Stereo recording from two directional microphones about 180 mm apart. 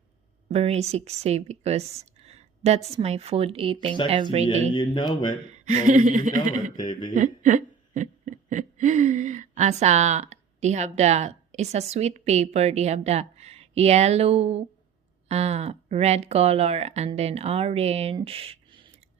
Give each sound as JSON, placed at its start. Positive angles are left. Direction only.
{"t": 0.5, "sound": "speech", "side_deg": -35}
{"t": 4.7, "sound": "speech", "side_deg": 25}
{"t": 5.6, "sound": "speech", "side_deg": -45}
{"t": 6.7, "sound": "speech", "side_deg": 25}
{"t": 7.1, "sound": "speech", "side_deg": -45}